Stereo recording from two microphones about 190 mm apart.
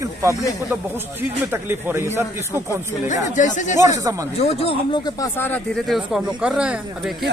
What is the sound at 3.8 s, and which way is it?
Speech, 15° right (ahead or behind).